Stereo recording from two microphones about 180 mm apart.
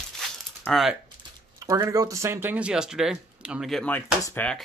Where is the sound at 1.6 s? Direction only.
15° right (ahead or behind); by 4.0 s 5° left (ahead or behind).